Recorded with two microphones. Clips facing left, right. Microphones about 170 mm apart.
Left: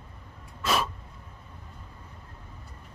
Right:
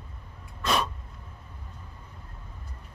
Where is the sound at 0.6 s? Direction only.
5° left (ahead or behind).